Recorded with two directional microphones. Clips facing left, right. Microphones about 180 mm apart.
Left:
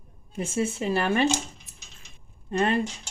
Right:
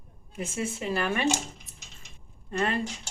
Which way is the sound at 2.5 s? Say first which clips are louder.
Left 4 dB; 30° left (ahead or behind).